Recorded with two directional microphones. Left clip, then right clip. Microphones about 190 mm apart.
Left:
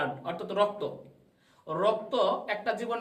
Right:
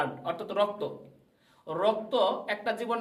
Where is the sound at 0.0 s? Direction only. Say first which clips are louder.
Right 1 dB; 25° right (ahead or behind).